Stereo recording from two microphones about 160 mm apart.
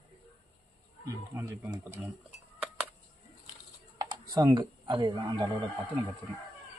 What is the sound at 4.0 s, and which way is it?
Speech, 25° right (ahead or behind).